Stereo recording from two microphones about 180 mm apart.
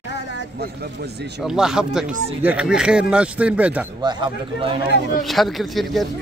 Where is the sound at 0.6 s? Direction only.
60° right (ahead or behind).